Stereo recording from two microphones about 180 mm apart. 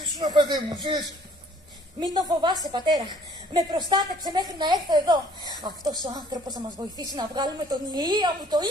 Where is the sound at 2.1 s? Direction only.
20° right (ahead or behind).